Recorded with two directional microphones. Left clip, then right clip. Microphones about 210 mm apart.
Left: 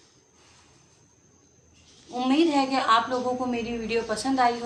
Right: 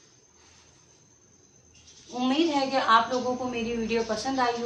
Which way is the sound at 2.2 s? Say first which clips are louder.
Left 3 dB; 55° left (ahead or behind).